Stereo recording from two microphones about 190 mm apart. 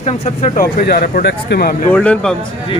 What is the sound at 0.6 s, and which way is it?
Speech, 50° left (ahead or behind).